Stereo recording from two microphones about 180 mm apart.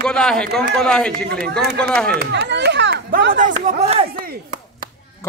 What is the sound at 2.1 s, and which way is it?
Speech, 70° right (ahead or behind).